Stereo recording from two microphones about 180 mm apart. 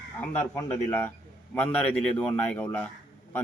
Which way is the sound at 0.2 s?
15° left (ahead or behind).